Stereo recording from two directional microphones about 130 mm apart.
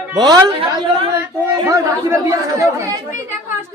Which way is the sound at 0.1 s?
30° right (ahead or behind).